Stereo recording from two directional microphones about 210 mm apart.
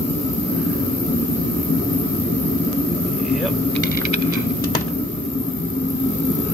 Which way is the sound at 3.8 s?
45° left (ahead or behind).